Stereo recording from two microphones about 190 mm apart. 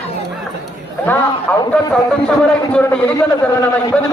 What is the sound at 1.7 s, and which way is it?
A man's voice, 5° left (ahead or behind).